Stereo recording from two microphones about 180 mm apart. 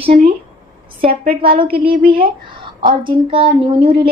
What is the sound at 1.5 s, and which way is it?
A woman's voice, 30° right (ahead or behind).